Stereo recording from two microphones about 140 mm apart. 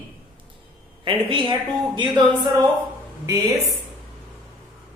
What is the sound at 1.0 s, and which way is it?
A woman's voice, 35° right (ahead or behind).